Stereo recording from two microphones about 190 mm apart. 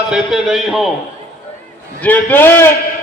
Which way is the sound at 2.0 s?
10° left (ahead or behind).